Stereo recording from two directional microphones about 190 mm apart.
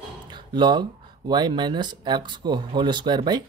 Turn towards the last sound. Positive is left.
turn(degrees=-25)  # may be behind; listen again after turning